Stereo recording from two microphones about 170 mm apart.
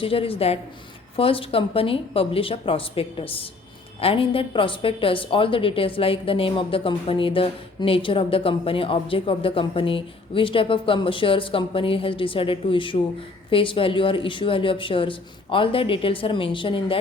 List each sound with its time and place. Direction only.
0.0 s speech: 35° left (ahead or behind)